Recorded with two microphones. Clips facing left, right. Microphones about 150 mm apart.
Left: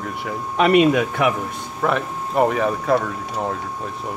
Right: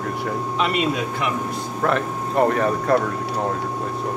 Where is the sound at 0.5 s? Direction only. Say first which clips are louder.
Left 9 dB; 60° left (ahead or behind).